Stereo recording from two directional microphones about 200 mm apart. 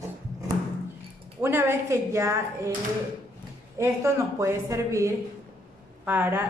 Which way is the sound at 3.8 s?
15° right (ahead or behind).